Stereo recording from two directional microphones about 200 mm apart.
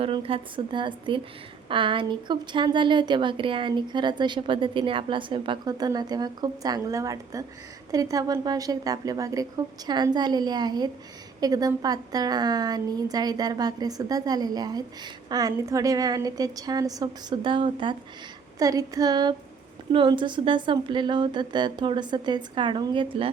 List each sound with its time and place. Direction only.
0.0 s a woman's voice: 25° right (ahead or behind)